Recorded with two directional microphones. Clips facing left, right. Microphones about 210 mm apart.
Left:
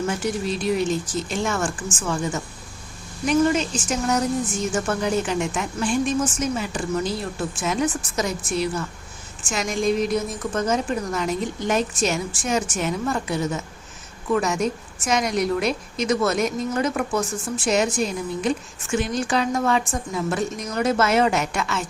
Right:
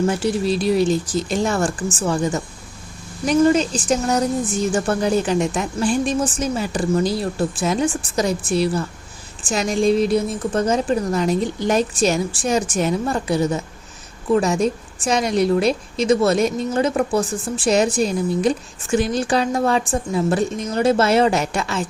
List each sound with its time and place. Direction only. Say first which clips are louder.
0.2 s a woman's voice: right 5 dB; 35° right (ahead or behind)